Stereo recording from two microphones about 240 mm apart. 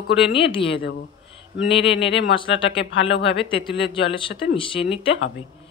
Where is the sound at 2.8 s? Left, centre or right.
Left.